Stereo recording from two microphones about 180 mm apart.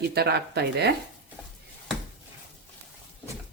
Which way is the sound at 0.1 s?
65° right (ahead or behind).